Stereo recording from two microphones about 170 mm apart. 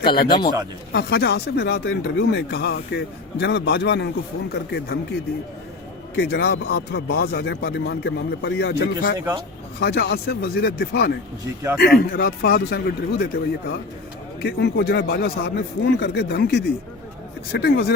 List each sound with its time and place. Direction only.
0.0 s a man's voice: 30° left (ahead or behind)
0.9 s speech: 75° left (ahead or behind)
6.1 s speech: 70° left (ahead or behind)
16.0 s speech: 80° left